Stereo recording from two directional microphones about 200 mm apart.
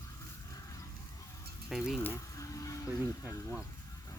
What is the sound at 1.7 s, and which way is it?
Speech, centre (ahead or behind).